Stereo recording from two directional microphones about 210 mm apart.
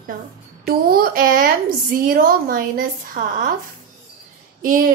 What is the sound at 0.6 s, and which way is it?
Speech, 45° right (ahead or behind).